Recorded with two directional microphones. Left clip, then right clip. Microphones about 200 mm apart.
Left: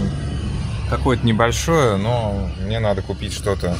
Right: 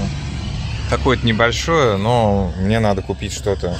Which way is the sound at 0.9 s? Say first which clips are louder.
Right 3 dB; centre (ahead or behind).